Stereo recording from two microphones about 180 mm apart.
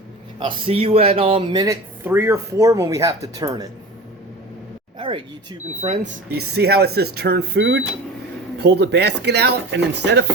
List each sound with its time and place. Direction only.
0.3 s speech: 30° right (ahead or behind)
1.6 s speech: 15° right (ahead or behind)
4.9 s speech: 30° right (ahead or behind)
6.0 s speech: 65° right (ahead or behind)